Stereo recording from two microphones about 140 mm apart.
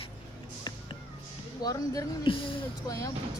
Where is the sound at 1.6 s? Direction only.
25° left (ahead or behind).